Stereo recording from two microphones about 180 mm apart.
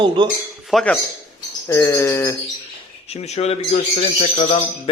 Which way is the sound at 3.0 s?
35° left (ahead or behind).